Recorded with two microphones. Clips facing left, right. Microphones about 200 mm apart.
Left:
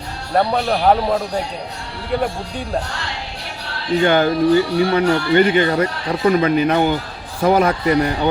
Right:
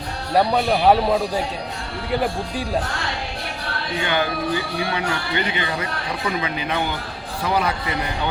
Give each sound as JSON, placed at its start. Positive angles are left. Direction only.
{"t": 0.3, "sound": "speech", "side_deg": -5}
{"t": 4.0, "sound": "speech", "side_deg": 45}